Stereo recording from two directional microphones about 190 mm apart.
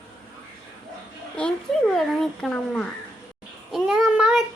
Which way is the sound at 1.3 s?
5° left (ahead or behind).